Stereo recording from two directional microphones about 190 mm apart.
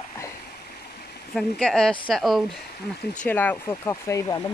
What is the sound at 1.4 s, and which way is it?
Speech, 5° left (ahead or behind).